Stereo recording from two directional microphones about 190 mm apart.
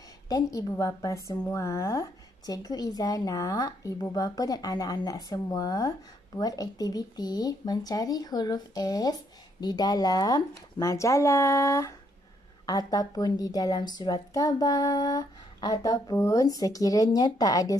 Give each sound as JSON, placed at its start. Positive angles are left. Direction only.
{"t": 0.3, "sound": "speech", "side_deg": 15}